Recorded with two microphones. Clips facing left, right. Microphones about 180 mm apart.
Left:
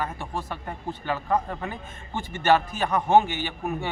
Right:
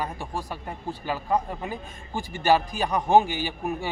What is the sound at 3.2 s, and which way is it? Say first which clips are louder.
Speech: right 1 dB; 20° left (ahead or behind).